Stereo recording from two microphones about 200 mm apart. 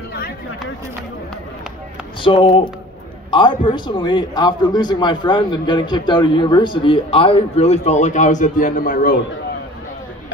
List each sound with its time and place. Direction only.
2.2 s a man's voice: 25° left (ahead or behind); by 9.1 s 45° left (ahead or behind)